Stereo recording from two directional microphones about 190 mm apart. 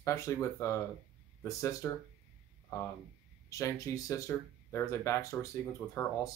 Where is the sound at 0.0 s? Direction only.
15° left (ahead or behind).